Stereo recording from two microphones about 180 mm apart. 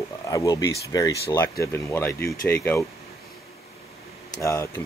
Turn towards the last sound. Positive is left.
turn(degrees=15)  # may be behind; listen again after turning